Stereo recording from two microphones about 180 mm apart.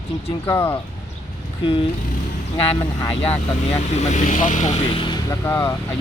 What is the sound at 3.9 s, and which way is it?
Speech, 40° left (ahead or behind).